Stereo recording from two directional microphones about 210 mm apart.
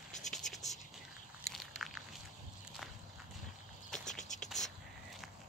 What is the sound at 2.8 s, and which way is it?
Walk, centre (ahead or behind).